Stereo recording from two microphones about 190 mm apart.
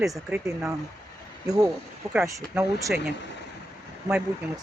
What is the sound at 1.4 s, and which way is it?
Speech, 20° right (ahead or behind).